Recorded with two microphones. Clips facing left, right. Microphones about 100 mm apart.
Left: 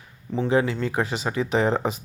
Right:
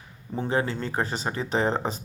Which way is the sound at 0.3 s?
35° right (ahead or behind).